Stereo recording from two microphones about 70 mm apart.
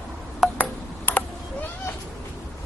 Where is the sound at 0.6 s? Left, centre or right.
Left.